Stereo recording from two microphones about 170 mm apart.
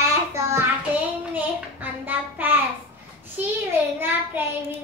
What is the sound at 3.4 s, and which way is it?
Child singing, 10° right (ahead or behind).